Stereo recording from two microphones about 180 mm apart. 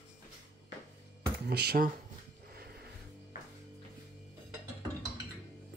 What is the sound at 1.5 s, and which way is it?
Speech, 65° right (ahead or behind).